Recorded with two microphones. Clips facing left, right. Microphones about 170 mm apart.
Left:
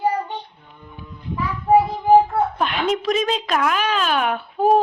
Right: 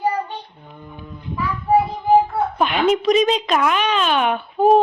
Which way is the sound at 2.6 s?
5° right (ahead or behind).